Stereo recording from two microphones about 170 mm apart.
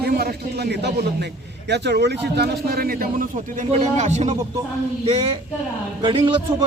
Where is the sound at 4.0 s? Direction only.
45° right (ahead or behind).